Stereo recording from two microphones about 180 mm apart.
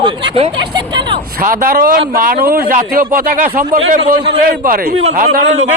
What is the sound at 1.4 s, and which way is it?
A man's voice, 50° right (ahead or behind).